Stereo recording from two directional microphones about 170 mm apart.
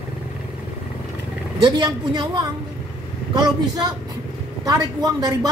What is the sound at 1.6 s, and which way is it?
A woman's voice, 25° right (ahead or behind).